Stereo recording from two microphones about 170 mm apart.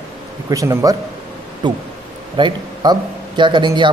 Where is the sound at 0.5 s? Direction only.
15° right (ahead or behind).